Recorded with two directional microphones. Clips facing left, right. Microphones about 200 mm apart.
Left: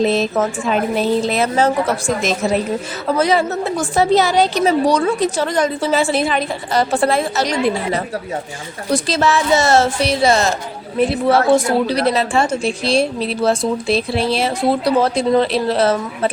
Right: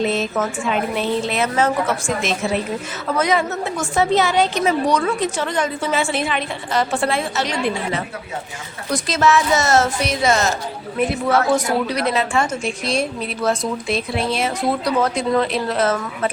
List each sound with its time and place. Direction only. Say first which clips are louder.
0.0 s a woman's voice: left 4 dB; 35° left (ahead or behind)
8.9 s a woman's voice: left 1 dB; 30° left (ahead or behind)